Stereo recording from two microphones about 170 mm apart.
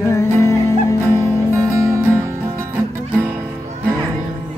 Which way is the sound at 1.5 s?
15° right (ahead or behind).